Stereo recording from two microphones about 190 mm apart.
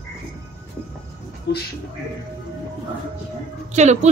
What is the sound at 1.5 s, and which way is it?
Speech, 60° left (ahead or behind).